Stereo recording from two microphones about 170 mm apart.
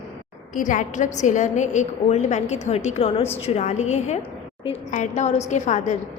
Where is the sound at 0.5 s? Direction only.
50° left (ahead or behind).